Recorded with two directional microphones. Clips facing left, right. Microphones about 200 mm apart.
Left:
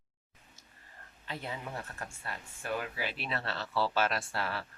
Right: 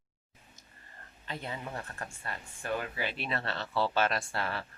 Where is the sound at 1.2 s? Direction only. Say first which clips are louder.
Right 1 dB; 5° left (ahead or behind).